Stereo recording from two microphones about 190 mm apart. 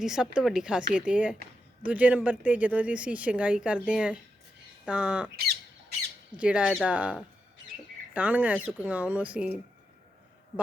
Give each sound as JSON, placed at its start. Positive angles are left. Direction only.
{"t": 0.0, "sound": "speech", "side_deg": -5}
{"t": 6.3, "sound": "speech", "side_deg": -5}